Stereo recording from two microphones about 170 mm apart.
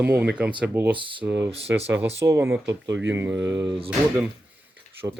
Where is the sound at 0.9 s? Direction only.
30° right (ahead or behind).